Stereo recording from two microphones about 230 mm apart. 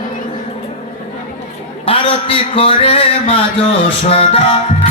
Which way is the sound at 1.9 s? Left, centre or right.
Left.